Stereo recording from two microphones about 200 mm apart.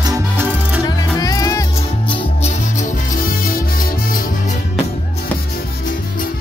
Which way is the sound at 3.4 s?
45° left (ahead or behind).